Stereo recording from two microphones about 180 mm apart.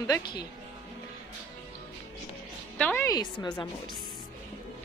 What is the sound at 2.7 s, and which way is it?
Speech, 10° left (ahead or behind).